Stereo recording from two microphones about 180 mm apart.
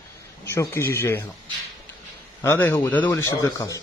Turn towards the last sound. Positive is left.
turn(degrees=20)  # may be behind; listen again after turning